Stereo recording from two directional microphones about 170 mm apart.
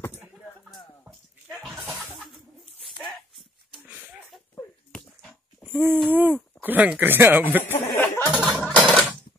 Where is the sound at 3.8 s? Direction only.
10° right (ahead or behind).